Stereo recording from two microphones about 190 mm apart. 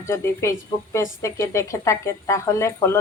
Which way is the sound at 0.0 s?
15° left (ahead or behind).